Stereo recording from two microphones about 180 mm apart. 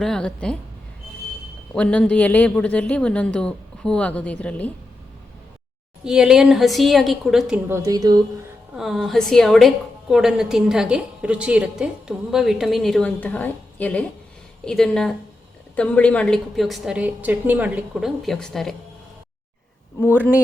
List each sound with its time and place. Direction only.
0.0 s a woman's voice: 5° left (ahead or behind)
1.7 s a woman's voice: 5° left (ahead or behind)
6.1 s a woman's voice: 5° right (ahead or behind)
7.7 s speech: 20° right (ahead or behind)
8.8 s a woman's voice: centre (ahead or behind)